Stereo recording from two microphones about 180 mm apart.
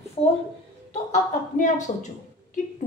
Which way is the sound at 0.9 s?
40° left (ahead or behind).